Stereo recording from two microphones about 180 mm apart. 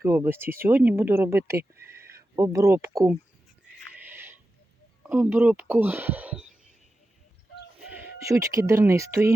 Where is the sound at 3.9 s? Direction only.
10° right (ahead or behind).